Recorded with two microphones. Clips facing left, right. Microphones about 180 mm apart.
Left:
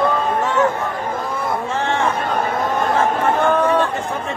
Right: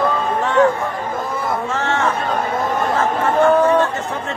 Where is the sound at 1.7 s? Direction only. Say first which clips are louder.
Left 1 dB; 15° left (ahead or behind).